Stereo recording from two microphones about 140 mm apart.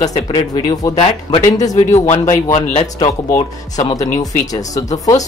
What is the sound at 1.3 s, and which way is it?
Speech, 30° left (ahead or behind).